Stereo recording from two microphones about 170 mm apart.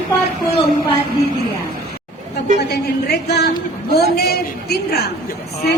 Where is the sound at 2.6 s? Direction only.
70° left (ahead or behind).